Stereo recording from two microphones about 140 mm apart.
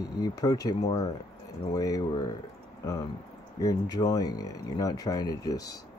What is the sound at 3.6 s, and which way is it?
Speech, 25° left (ahead or behind).